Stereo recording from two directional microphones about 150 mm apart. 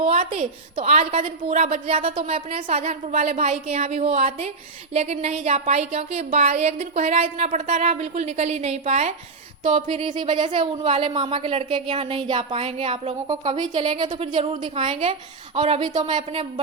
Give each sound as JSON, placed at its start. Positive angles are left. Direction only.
{"t": 0.3, "sound": "speech", "side_deg": -45}